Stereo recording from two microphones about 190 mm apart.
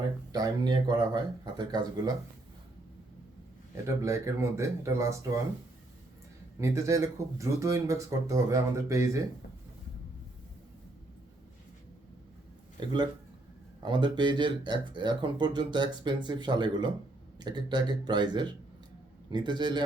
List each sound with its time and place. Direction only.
0.3 s speech: 20° right (ahead or behind)
3.8 s speech: 15° right (ahead or behind)
6.6 s speech: 15° right (ahead or behind)
12.8 s speech: 25° right (ahead or behind)